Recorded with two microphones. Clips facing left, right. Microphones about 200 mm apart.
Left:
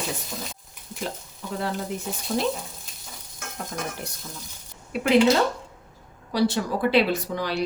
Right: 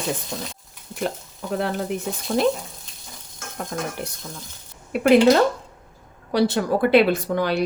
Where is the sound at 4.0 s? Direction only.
65° right (ahead or behind).